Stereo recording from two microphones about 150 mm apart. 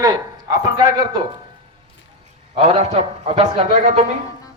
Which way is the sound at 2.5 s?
45° right (ahead or behind).